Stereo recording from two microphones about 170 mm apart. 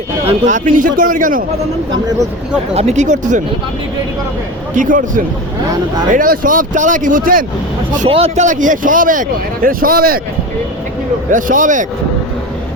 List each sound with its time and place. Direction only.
0.3 s speech: 45° right (ahead or behind)
2.7 s speech: 45° right (ahead or behind)
4.8 s speech: 50° right (ahead or behind)
7.9 s speech: 40° right (ahead or behind); by 10.2 s 60° right (ahead or behind)
11.3 s speech: 50° right (ahead or behind)